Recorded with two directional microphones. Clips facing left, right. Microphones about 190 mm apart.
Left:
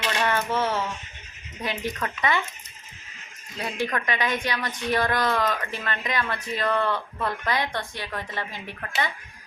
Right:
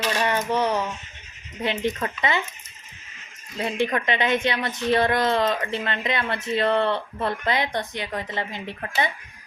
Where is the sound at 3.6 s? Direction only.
25° right (ahead or behind).